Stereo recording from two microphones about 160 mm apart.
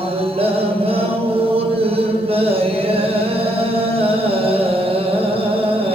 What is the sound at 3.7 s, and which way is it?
Music, 35° right (ahead or behind).